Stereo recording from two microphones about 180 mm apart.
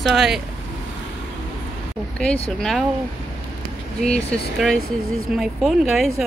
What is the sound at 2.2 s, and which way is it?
Speech, 5° left (ahead or behind).